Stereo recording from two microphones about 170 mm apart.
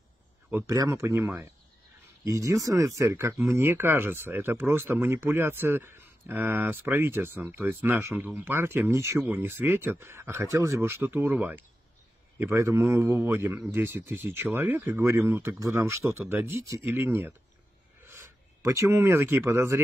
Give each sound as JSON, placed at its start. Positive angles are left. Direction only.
{"t": 0.5, "sound": "speech", "side_deg": -15}